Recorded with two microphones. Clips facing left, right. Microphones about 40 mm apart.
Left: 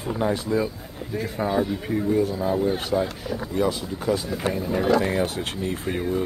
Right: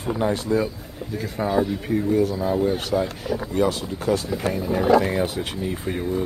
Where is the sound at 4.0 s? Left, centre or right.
Centre.